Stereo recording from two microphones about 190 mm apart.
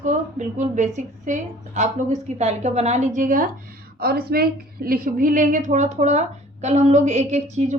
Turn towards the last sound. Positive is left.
turn(degrees=-35)  # may be behind; listen again after turning